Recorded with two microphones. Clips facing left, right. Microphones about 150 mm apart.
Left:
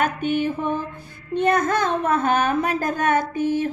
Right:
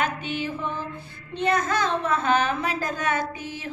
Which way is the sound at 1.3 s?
50° left (ahead or behind).